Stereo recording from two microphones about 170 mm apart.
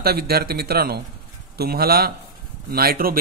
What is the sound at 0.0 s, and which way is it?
A man's voice, 65° right (ahead or behind).